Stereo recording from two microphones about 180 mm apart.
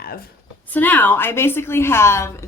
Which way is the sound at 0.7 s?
10° left (ahead or behind).